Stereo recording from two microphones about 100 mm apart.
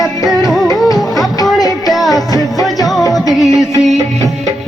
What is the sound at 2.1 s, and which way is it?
Music, 40° left (ahead or behind).